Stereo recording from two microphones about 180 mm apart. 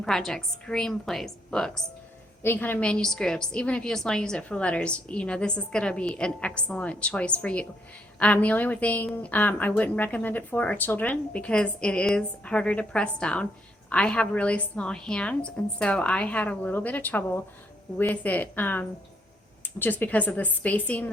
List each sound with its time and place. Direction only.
0.0 s a woman's voice: 5° left (ahead or behind)